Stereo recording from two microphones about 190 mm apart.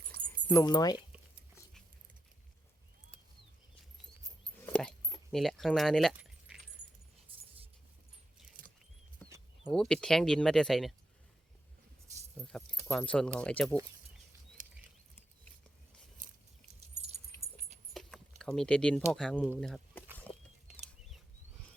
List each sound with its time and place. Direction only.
0.4 s speech: 20° left (ahead or behind)
4.6 s a sound: 5° left (ahead or behind)
5.0 s keys jangling: centre (ahead or behind)
9.7 s speech: 5° left (ahead or behind)
12.4 s speech: 5° left (ahead or behind)
17.9 s keys jangling: 5° left (ahead or behind)
19.1 s speech: centre (ahead or behind)
20.3 s a sound: 10° left (ahead or behind)
20.7 s bird flight: 5° right (ahead or behind)